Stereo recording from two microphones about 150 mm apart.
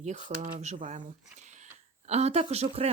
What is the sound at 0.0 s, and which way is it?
A woman's voice, 50° right (ahead or behind).